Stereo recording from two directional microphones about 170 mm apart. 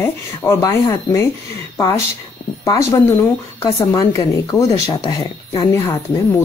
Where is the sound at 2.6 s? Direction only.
20° left (ahead or behind).